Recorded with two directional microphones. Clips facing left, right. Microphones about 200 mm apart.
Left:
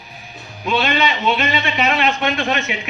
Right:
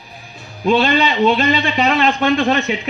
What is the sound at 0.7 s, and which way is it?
Speech, 35° right (ahead or behind).